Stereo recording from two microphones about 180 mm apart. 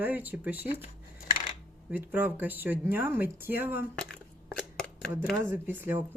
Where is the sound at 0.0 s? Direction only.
10° right (ahead or behind).